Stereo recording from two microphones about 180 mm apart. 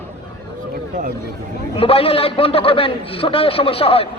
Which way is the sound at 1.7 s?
30° left (ahead or behind).